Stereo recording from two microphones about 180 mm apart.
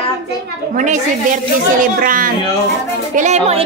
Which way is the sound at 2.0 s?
50° right (ahead or behind).